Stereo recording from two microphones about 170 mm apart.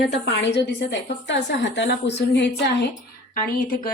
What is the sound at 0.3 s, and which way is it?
Speech, 90° left.